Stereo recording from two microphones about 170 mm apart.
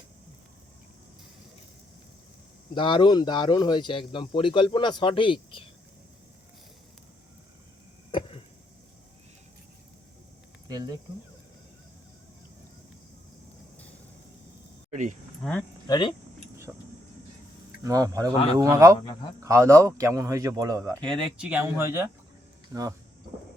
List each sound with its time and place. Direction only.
2.7 s speech: 30° left (ahead or behind)
8.1 s chop: 30° left (ahead or behind)
10.7 s speech: 25° right (ahead or behind)
15.4 s speech: centre (ahead or behind)
15.9 s speech: 25° left (ahead or behind)
16.7 s vehicle: 10° right (ahead or behind)
17.8 s speech: 20° right (ahead or behind)
21.0 s speech: centre (ahead or behind); by 23.0 s 20° right (ahead or behind)